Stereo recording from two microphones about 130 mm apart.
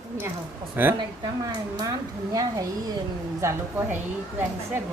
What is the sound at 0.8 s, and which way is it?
Speech, 15° right (ahead or behind).